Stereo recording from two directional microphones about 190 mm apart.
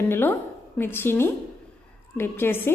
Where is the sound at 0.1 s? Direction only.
10° left (ahead or behind).